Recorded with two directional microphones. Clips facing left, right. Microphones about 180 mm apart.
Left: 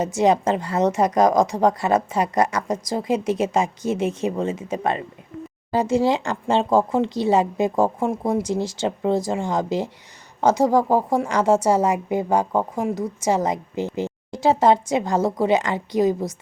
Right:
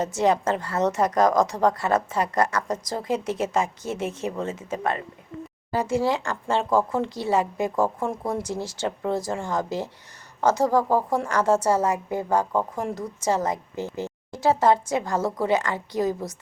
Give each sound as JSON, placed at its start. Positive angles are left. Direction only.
{"t": 0.0, "sound": "a woman's voice", "side_deg": 10}